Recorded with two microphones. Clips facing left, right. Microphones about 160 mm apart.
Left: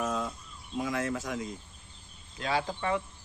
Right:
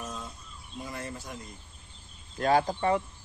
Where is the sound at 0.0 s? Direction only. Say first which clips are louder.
Left 8 dB; 90° left.